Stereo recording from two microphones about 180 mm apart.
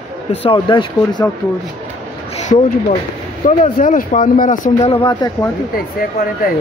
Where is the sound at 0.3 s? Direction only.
30° left (ahead or behind).